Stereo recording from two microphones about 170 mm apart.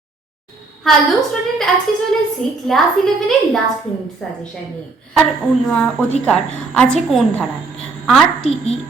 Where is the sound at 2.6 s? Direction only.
Centre (ahead or behind).